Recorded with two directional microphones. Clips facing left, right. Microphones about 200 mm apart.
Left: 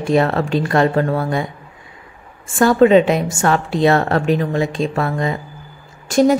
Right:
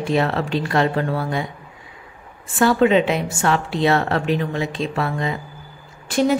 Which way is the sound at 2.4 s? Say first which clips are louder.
Left 4 dB; 45° left (ahead or behind).